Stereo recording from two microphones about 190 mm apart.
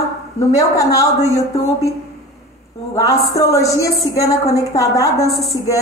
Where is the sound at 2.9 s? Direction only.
15° left (ahead or behind).